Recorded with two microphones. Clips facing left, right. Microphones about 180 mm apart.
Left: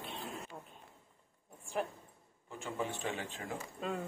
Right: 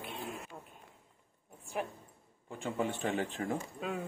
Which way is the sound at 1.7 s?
5° right (ahead or behind).